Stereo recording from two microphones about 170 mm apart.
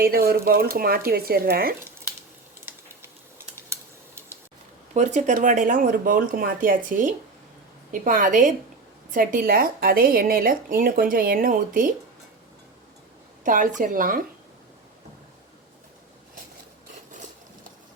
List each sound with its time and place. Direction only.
0.0 s speech: 65° right (ahead or behind)
2.6 s a sound: 15° right (ahead or behind)
4.9 s speech: 45° right (ahead or behind)
13.4 s speech: 50° right (ahead or behind)